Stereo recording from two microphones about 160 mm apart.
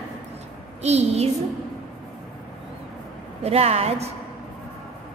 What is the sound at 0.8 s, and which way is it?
Speech, 40° right (ahead or behind).